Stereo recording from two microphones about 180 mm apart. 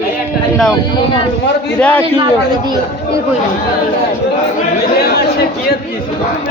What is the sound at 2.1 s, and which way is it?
Speech, 25° right (ahead or behind).